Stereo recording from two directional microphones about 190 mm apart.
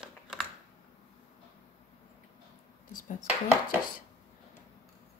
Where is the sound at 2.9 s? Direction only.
45° left (ahead or behind).